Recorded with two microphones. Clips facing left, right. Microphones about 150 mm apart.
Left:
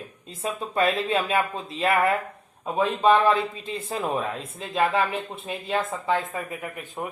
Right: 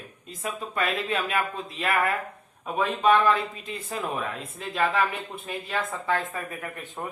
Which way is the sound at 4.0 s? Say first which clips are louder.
Left 3 dB; 30° left (ahead or behind).